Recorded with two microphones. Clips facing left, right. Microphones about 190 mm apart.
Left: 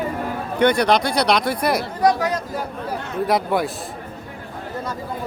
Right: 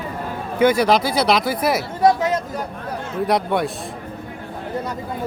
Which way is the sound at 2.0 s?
25° right (ahead or behind).